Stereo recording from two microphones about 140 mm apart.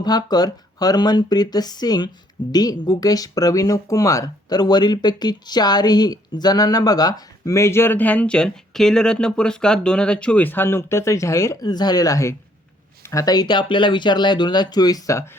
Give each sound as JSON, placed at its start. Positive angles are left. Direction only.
{"t": 0.0, "sound": "a woman's voice", "side_deg": 30}